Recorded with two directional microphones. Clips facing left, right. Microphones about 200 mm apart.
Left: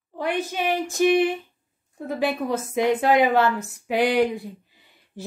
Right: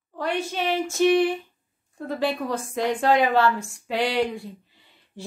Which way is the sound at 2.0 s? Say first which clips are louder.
Left 1 dB; 10° left (ahead or behind).